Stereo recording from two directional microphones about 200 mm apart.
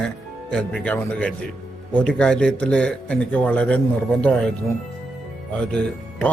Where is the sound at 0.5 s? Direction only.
5° left (ahead or behind).